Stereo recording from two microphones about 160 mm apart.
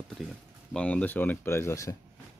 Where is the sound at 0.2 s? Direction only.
Centre (ahead or behind).